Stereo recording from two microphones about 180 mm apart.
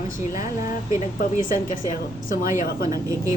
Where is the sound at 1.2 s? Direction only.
50° left (ahead or behind).